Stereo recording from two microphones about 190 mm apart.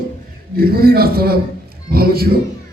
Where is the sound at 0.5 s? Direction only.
55° right (ahead or behind).